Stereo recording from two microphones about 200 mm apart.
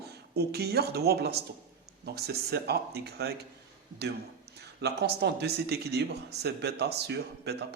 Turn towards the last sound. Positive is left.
turn(degrees=-55)  # may be behind; listen again after turning